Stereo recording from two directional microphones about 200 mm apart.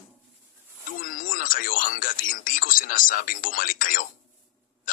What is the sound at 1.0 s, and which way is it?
Speech, 45° left (ahead or behind).